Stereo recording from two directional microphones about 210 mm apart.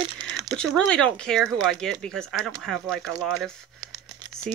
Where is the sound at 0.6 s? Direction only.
5° left (ahead or behind).